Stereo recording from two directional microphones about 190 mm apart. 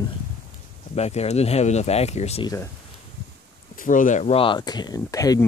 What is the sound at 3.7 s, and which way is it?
Speech, 45° left (ahead or behind).